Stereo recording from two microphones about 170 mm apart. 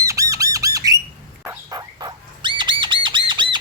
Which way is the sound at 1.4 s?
15° right (ahead or behind).